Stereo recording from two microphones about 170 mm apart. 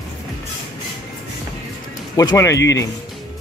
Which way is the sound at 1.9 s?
20° left (ahead or behind).